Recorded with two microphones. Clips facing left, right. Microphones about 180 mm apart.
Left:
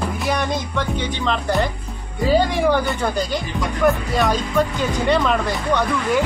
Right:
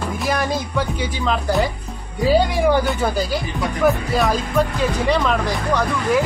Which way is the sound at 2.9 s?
5° right (ahead or behind).